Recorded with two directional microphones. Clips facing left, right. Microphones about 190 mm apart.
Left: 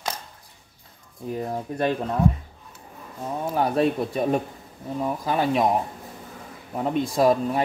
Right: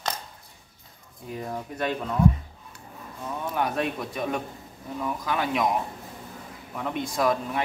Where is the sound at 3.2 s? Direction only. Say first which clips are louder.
Left 4 dB; 35° left (ahead or behind).